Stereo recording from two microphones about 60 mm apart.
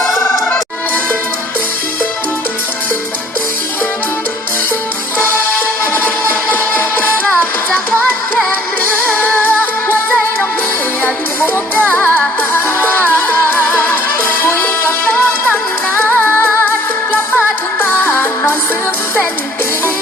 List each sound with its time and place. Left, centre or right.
5.8 s music: left
9.1 s music: left
11.0 s music: left